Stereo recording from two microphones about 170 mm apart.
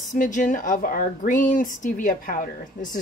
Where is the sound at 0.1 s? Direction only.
50° left (ahead or behind).